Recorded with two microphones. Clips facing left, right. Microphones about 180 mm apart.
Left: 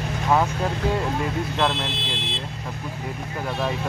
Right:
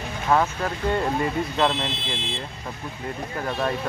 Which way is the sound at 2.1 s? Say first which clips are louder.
Even; 65° left (ahead or behind).